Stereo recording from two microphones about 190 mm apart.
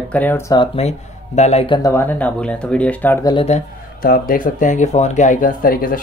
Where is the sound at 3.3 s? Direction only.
30° left (ahead or behind).